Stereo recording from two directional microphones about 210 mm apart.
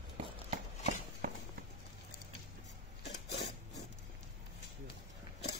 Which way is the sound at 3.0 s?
50° left (ahead or behind).